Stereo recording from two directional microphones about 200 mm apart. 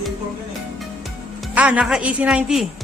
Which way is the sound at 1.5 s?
5° right (ahead or behind).